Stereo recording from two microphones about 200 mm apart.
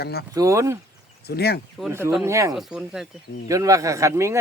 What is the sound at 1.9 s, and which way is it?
Speech, 10° right (ahead or behind).